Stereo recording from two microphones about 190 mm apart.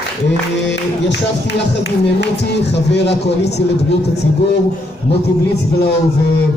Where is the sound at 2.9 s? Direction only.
65° left (ahead or behind).